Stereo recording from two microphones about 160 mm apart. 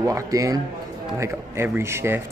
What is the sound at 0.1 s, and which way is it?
Speech, 20° right (ahead or behind).